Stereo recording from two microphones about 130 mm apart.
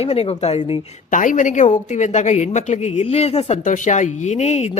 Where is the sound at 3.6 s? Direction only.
75° left (ahead or behind); by 4.7 s 60° left (ahead or behind).